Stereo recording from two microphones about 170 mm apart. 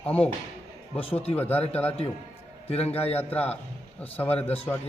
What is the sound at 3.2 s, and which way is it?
Speech, 10° left (ahead or behind).